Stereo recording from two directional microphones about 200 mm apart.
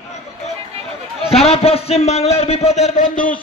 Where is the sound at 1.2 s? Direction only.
30° left (ahead or behind).